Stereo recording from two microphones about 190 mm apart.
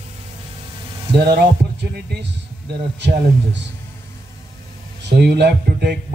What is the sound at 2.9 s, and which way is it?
Speech, 65° right (ahead or behind).